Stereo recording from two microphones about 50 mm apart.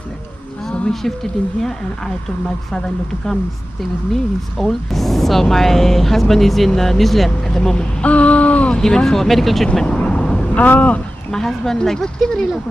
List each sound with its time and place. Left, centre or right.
0.7 s a sound: centre
4.1 s speech: centre; by 8.7 s left
8.7 s speech: centre
9.8 s vehicle: centre
10.5 s speech: left
11.3 s speech: centre